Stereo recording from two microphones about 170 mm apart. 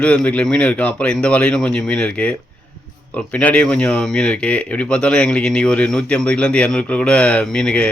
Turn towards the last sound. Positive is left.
turn(degrees=5)  # may be behind; listen again after turning